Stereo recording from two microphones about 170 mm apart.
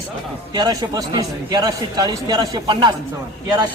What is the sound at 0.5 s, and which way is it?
A man's voice, 25° right (ahead or behind).